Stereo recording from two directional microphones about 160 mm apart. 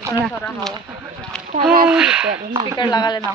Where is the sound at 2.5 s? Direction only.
25° right (ahead or behind).